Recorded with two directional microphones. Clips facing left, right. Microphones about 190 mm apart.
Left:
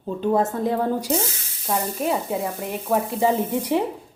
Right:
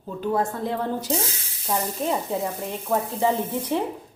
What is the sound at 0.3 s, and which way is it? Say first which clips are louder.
A woman's voice: left 4 dB; 25° left (ahead or behind).